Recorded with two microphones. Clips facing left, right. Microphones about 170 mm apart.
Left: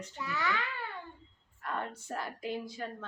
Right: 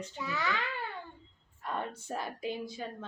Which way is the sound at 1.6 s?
20° right (ahead or behind).